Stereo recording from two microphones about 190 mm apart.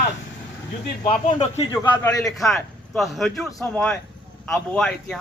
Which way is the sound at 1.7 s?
20° left (ahead or behind).